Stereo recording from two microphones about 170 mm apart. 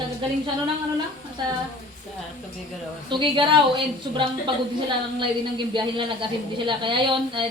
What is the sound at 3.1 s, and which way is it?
A woman's voice, 30° right (ahead or behind).